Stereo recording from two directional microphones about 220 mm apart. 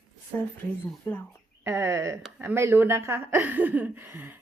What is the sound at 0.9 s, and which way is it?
Speech, 10° left (ahead or behind).